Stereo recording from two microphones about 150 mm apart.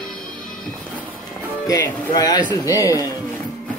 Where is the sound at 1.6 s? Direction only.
25° left (ahead or behind).